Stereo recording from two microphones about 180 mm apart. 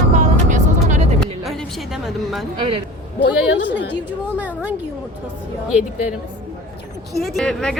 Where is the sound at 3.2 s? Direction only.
80° left.